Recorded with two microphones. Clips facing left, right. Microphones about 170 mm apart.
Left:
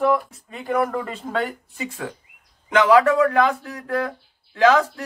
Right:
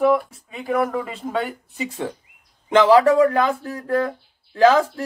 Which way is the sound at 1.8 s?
25° right (ahead or behind).